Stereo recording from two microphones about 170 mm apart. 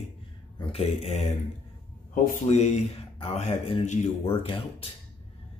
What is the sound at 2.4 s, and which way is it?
Speech, 40° left (ahead or behind).